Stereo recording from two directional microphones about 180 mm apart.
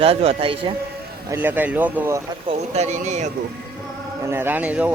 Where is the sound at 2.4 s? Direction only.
40° right (ahead or behind).